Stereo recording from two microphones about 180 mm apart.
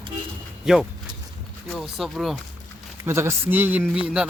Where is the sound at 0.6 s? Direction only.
5° right (ahead or behind).